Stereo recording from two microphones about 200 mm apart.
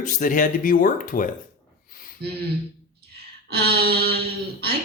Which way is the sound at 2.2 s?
50° right (ahead or behind).